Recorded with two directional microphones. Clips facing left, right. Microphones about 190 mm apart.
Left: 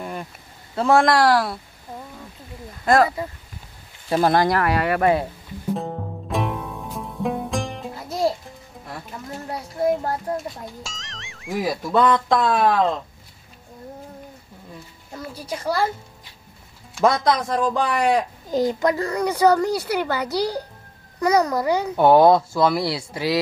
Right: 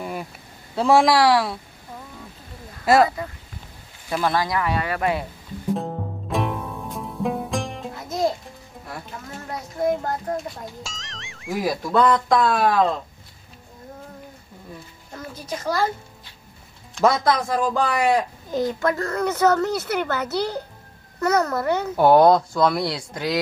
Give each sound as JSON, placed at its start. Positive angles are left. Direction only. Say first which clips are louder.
{"t": 0.0, "sound": "a sound", "louder": "right 1 dB", "side_deg": -5}
{"t": 0.7, "sound": "speech", "louder": "even", "side_deg": 0}
{"t": 2.8, "sound": "speech", "louder": "right 1 dB", "side_deg": -5}
{"t": 4.1, "sound": "speech", "louder": "left 4 dB", "side_deg": 40}
{"t": 4.5, "sound": "speech", "louder": "left 4 dB", "side_deg": 65}
{"t": 5.7, "sound": "music", "louder": "right 1 dB", "side_deg": 0}
{"t": 9.5, "sound": "a sound", "louder": "left 1 dB", "side_deg": 5}
{"t": 10.3, "sound": "speech", "louder": "even", "side_deg": 0}
{"t": 15.4, "sound": "speech", "louder": "even", "side_deg": 10}
{"t": 17.0, "sound": "speech", "louder": "even", "side_deg": -5}
{"t": 18.5, "sound": "speech", "louder": "left 3 dB", "side_deg": 20}
{"t": 21.9, "sound": "speech", "louder": "even", "side_deg": 0}